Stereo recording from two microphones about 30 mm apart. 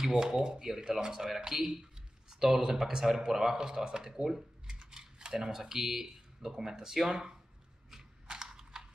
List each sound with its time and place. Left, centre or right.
0.2 s speech: right
1.8 s a sound: centre
2.7 s speech: centre
5.3 s speech: centre
7.9 s mechanisms: right